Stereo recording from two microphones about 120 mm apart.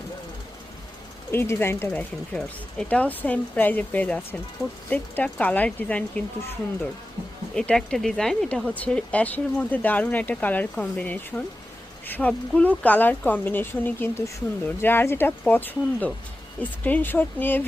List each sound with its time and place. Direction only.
1.3 s speech: 20° left (ahead or behind)
7.5 s speech: 5° left (ahead or behind)